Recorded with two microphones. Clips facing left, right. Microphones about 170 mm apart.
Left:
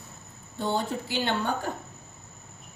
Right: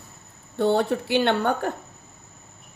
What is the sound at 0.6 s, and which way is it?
A woman's voice, 65° right (ahead or behind).